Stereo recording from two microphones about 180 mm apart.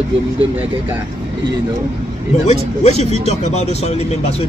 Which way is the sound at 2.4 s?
35° left (ahead or behind).